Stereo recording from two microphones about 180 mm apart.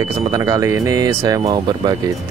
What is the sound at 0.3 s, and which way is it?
A man's voice, 15° right (ahead or behind).